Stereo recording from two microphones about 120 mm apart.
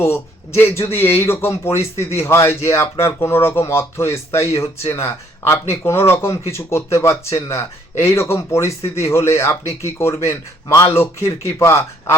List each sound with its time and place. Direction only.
0.6 s speech: 20° left (ahead or behind)